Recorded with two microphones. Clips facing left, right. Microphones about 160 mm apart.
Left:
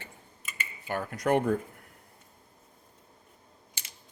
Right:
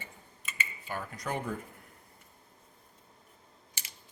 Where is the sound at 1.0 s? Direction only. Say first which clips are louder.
Left 12 dB; 65° left (ahead or behind).